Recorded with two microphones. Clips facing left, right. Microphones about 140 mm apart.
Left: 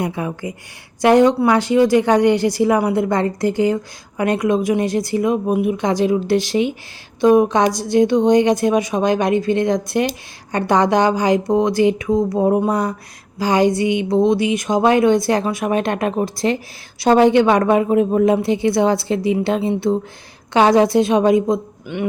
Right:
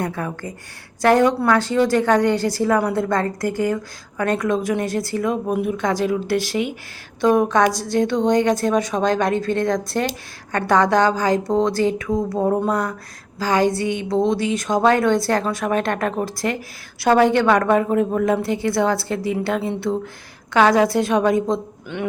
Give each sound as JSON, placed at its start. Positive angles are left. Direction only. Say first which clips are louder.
{"t": 0.0, "sound": "a woman's voice", "louder": "left 3 dB", "side_deg": 15}